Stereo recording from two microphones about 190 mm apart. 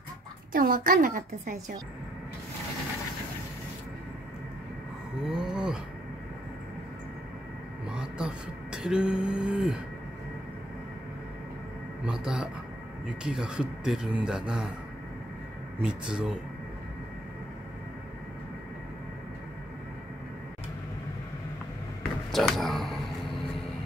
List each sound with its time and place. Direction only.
0.5 s a woman's voice: 45° right (ahead or behind)
5.2 s a sound: 5° right (ahead or behind)
7.9 s a sound: 5° right (ahead or behind)
12.1 s speech: 5° right (ahead or behind)
15.8 s speech: 5° right (ahead or behind)
22.3 s speech: centre (ahead or behind)